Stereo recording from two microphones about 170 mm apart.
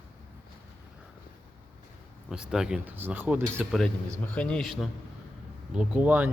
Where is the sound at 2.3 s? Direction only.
5° right (ahead or behind).